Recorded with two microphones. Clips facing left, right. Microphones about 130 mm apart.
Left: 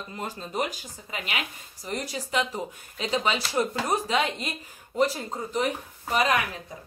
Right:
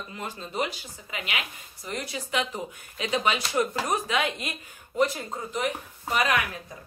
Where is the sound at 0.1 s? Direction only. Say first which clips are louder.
Left 3 dB; 40° left (ahead or behind).